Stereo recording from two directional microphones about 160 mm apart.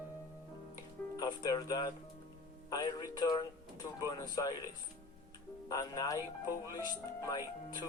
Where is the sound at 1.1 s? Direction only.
25° left (ahead or behind).